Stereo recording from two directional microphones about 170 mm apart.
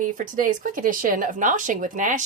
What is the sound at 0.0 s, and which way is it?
Music, 50° right (ahead or behind).